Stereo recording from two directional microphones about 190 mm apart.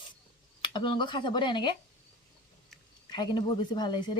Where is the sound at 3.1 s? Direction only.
25° left (ahead or behind).